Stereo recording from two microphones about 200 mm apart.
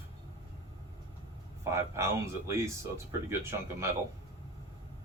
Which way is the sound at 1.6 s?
15° right (ahead or behind).